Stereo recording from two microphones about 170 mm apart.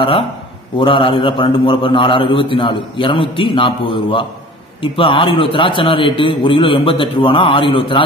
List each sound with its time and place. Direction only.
0.7 s a man's voice: 30° left (ahead or behind)